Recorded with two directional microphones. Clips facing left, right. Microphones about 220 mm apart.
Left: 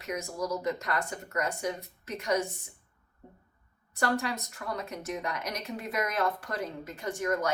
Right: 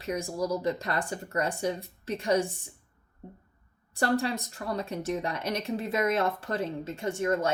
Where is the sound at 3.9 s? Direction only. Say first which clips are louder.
Right 3 dB; 30° right (ahead or behind).